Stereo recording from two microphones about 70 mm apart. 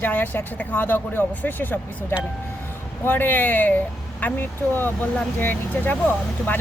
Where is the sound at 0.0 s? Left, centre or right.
Left.